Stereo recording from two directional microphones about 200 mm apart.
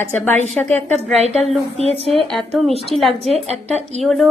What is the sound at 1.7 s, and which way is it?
Speech, 30° right (ahead or behind).